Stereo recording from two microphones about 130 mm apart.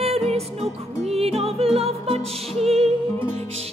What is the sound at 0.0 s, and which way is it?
Music, 55° right (ahead or behind).